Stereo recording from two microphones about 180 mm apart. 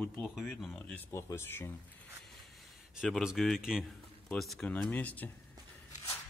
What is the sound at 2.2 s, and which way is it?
Speech, centre (ahead or behind).